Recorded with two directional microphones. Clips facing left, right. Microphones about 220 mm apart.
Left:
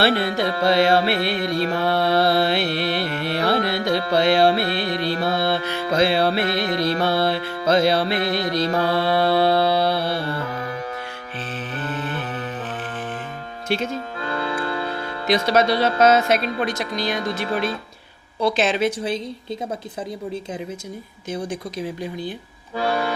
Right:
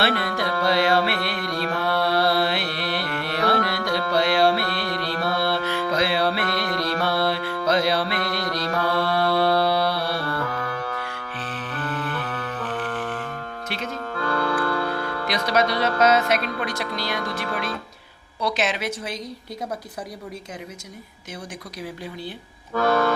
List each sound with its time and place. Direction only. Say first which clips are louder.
0.0 s music: left 4 dB; 25° left (ahead or behind)
11.8 s music: even; 25° left (ahead or behind)
13.7 s speech: left 7 dB; 25° left (ahead or behind)
22.7 s accordion: right 3 dB; 15° left (ahead or behind)